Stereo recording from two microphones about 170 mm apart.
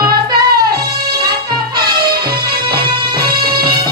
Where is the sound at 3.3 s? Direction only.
65° right (ahead or behind).